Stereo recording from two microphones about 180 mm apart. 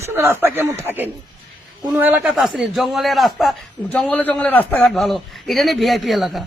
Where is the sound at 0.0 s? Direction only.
15° right (ahead or behind).